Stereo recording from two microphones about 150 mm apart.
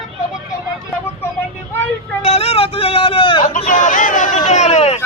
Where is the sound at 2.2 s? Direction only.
40° left (ahead or behind).